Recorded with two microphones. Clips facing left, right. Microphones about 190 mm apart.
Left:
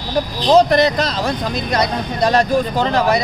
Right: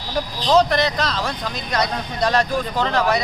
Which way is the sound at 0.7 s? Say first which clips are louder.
Left 5 dB; 10° left (ahead or behind).